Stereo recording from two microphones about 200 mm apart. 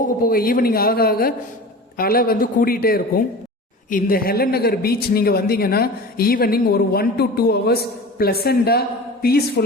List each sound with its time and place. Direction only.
0.0 s a woman's voice: 45° left (ahead or behind)